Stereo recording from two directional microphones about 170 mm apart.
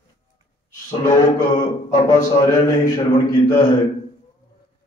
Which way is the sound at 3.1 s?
25° left (ahead or behind).